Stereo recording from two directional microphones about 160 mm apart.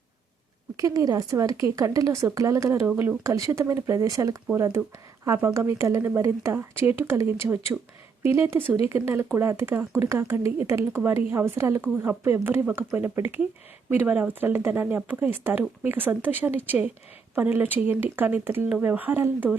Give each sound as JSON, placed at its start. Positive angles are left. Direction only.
{"t": 0.8, "sound": "speech", "side_deg": -20}